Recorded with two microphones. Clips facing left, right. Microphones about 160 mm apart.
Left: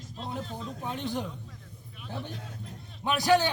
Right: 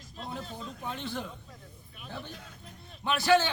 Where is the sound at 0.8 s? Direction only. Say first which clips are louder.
Left 4 dB; 15° left (ahead or behind).